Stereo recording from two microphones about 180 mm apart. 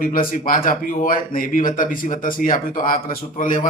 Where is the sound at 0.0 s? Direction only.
50° left (ahead or behind).